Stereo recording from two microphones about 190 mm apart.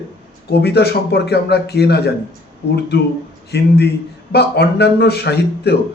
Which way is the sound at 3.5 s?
55° left (ahead or behind).